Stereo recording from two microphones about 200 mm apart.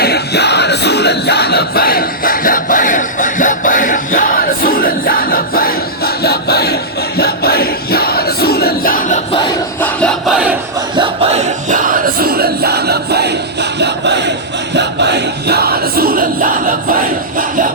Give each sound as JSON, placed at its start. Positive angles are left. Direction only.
{"t": 0.0, "sound": "music", "side_deg": 55}
{"t": 6.2, "sound": "a sound", "side_deg": 50}
{"t": 7.2, "sound": "music", "side_deg": 50}
{"t": 9.8, "sound": "crowd", "side_deg": 5}
{"t": 10.9, "sound": "music", "side_deg": -25}